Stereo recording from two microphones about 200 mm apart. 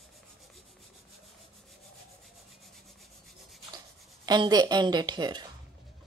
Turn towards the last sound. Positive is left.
turn(degrees=-20)  # may be behind; listen again after turning